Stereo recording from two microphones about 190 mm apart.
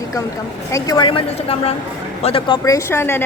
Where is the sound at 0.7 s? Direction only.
20° left (ahead or behind).